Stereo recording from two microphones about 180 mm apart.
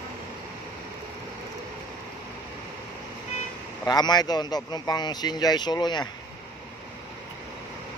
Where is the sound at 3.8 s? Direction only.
20° left (ahead or behind).